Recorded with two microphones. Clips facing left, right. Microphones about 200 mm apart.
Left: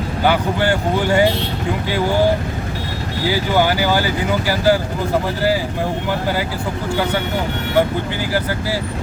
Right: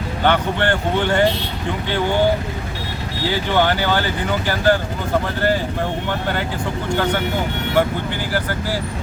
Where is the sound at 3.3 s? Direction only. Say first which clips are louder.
Left 1 dB; 10° left (ahead or behind).